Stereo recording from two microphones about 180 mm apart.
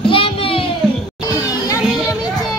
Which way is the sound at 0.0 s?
30° left (ahead or behind).